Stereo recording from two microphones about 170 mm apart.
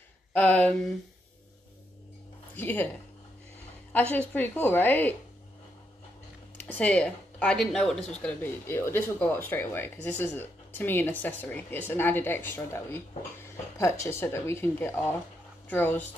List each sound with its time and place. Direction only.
0.3 s speech: 10° left (ahead or behind)
2.5 s speech: 10° left (ahead or behind)
3.9 s a woman's voice: 10° left (ahead or behind)
6.8 s speech: 5° left (ahead or behind)